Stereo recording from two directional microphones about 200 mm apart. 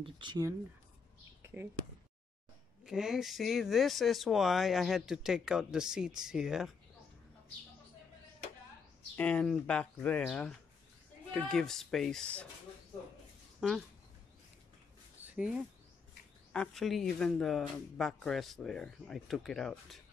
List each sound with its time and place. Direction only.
0.0 s speech: 20° right (ahead or behind)
1.4 s a sound: 10° right (ahead or behind)
2.8 s speech: centre (ahead or behind)
9.1 s speech: 5° left (ahead or behind)
13.6 s speech: centre (ahead or behind)
15.2 s a sound: 5° right (ahead or behind)
16.5 s speech: centre (ahead or behind)